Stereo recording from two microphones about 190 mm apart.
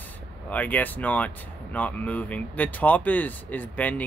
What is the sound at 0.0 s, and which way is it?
Speech, 10° left (ahead or behind).